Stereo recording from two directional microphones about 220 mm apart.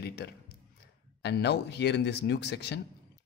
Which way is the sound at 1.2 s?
50° left (ahead or behind).